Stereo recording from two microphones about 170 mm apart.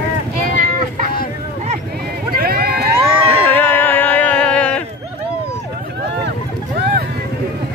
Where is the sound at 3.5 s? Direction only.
10° left (ahead or behind).